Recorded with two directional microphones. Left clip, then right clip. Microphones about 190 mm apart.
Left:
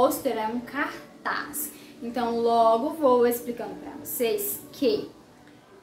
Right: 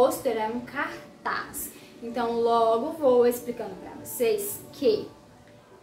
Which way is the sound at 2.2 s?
10° left (ahead or behind).